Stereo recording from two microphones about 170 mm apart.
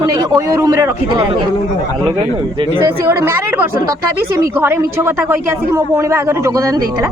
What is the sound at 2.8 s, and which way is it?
Speech, 15° right (ahead or behind).